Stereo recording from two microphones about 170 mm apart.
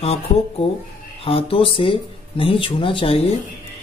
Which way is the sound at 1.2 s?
35° left (ahead or behind).